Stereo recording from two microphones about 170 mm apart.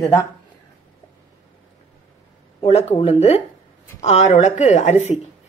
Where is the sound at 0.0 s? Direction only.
20° left (ahead or behind).